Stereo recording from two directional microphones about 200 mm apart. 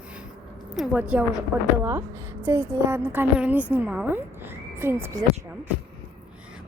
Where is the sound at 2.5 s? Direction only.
10° right (ahead or behind).